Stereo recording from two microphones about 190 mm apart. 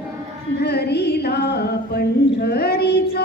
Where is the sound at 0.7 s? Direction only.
60° left (ahead or behind).